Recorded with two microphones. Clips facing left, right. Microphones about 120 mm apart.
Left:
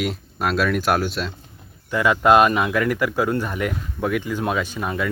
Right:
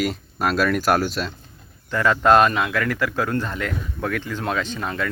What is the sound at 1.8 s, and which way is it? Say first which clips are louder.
Speech: left 1 dB; 15° left (ahead or behind).